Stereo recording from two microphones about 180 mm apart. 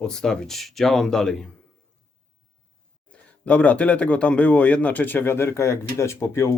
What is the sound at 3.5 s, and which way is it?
Speech, 5° left (ahead or behind).